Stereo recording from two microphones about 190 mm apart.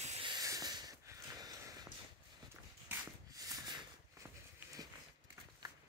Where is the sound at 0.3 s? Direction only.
20° right (ahead or behind).